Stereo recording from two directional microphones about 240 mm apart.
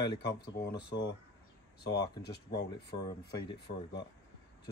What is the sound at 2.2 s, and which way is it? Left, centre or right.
Speech, left.